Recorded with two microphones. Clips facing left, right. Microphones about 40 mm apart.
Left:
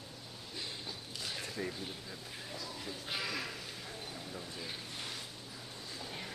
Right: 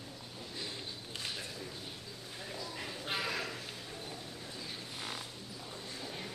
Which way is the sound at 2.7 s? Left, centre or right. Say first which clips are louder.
Right 3 dB; right.